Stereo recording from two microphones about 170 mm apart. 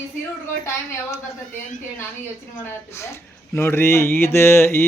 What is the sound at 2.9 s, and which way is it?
Speech, 15° left (ahead or behind).